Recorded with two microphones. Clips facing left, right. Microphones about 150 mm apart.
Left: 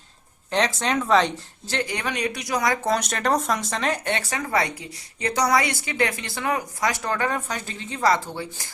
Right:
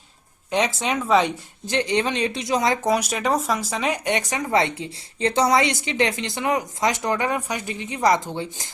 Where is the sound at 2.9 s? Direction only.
5° right (ahead or behind).